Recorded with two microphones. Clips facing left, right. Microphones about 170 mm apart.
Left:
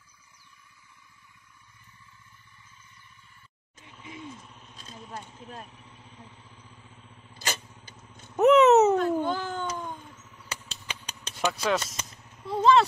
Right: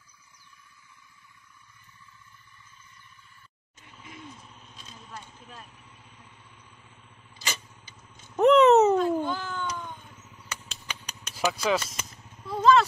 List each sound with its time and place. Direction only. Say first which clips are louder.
7.3 s vehicle: left 3 dB; 50° left (ahead or behind)
8.4 s a sound: even; 5° left (ahead or behind)
9.2 s cat: left 2 dB; 50° left (ahead or behind)
10.5 s a sound: left 1 dB; 30° left (ahead or behind)
11.3 s speech: right 1 dB; centre (ahead or behind)
12.4 s vehicle: even; 25° left (ahead or behind)